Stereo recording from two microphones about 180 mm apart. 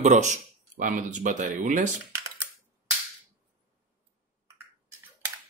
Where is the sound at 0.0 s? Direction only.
40° right (ahead or behind).